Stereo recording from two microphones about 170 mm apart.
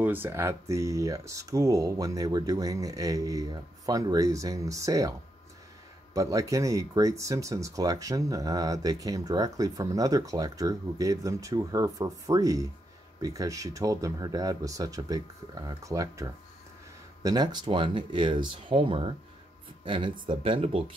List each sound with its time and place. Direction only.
0.0 s speech: 10° right (ahead or behind)
6.1 s speech: 20° right (ahead or behind)